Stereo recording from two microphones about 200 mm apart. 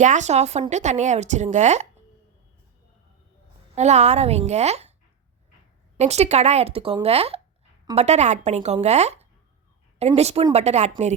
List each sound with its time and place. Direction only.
0.0 s a woman's voice: 35° right (ahead or behind)
3.8 s a woman's voice: 35° right (ahead or behind)
6.0 s a woman's voice: 35° right (ahead or behind)